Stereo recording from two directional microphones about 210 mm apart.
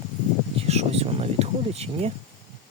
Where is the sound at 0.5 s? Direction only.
30° right (ahead or behind).